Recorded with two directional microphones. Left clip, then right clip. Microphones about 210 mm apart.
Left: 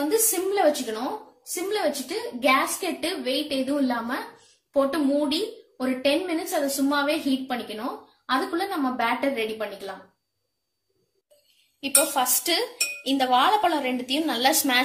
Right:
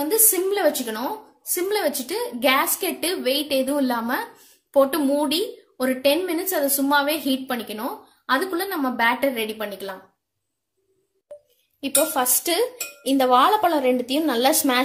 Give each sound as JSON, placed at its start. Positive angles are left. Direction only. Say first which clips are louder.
{"t": 0.1, "sound": "cutlery", "louder": "right 2 dB", "side_deg": -50}
{"t": 3.1, "sound": "a woman's voice", "louder": "right 6 dB", "side_deg": -40}
{"t": 8.3, "sound": "cutlery", "louder": "right 3 dB", "side_deg": -45}
{"t": 12.1, "sound": "cutlery", "louder": "right 1 dB", "side_deg": -50}